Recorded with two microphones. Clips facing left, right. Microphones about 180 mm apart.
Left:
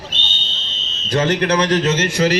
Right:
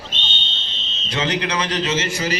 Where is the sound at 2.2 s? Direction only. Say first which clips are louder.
Left 8 dB; 65° left (ahead or behind).